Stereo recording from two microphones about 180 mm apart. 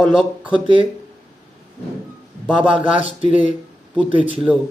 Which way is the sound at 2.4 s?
5° right (ahead or behind).